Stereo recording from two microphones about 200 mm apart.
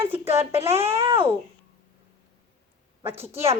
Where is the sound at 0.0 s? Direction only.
30° right (ahead or behind).